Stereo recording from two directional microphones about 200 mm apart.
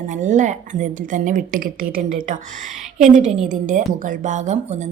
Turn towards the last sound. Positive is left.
turn(degrees=-35)  # may be behind; listen again after turning